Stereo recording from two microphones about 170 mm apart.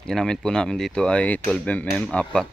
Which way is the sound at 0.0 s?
5° left (ahead or behind).